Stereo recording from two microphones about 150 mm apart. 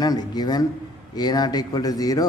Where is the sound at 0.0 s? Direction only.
25° left (ahead or behind).